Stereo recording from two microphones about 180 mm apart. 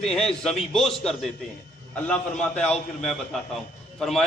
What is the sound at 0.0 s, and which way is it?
Speech, 5° left (ahead or behind).